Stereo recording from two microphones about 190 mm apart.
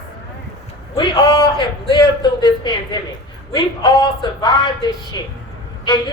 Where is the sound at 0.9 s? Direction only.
20° left (ahead or behind).